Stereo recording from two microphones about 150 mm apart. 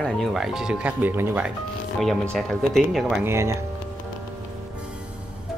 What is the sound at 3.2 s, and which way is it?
Speech, 20° right (ahead or behind).